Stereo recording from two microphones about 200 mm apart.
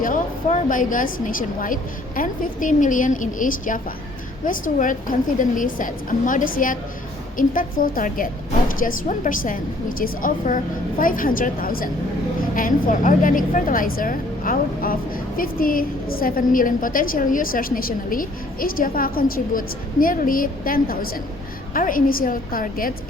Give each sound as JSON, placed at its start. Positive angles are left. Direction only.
{"t": 0.0, "sound": "a woman's voice", "side_deg": 40}